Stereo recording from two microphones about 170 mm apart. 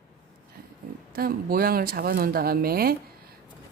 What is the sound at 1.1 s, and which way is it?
Speech, 60° right (ahead or behind).